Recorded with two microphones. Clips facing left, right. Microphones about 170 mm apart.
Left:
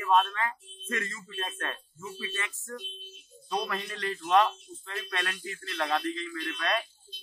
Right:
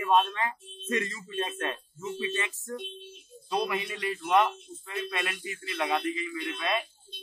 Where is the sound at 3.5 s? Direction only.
10° right (ahead or behind).